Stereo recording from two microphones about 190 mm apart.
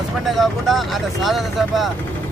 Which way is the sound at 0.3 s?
Centre (ahead or behind).